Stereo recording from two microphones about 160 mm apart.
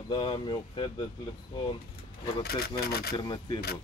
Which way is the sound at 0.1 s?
30° left (ahead or behind).